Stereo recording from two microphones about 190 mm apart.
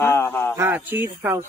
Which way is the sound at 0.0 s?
15° left (ahead or behind).